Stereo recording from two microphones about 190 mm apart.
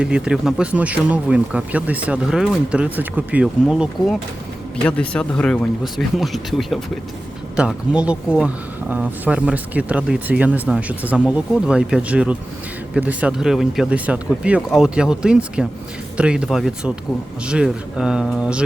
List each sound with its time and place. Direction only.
0.0 s speech: 5° right (ahead or behind)